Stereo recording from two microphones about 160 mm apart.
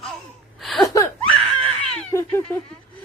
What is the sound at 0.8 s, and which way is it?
Laughter, 20° left (ahead or behind).